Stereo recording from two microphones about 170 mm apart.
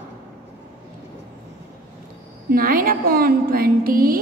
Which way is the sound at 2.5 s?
55° right (ahead or behind).